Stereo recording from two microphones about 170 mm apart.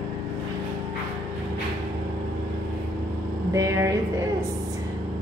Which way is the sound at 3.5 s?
15° right (ahead or behind).